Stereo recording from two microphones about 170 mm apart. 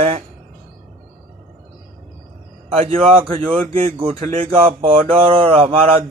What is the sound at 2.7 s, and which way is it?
Mantra, 35° right (ahead or behind).